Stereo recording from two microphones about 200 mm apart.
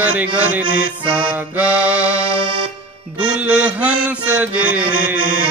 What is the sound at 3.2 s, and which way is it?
Music, 5° right (ahead or behind).